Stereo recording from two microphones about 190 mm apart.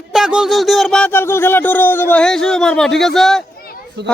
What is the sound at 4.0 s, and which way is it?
Speech, 65° right (ahead or behind).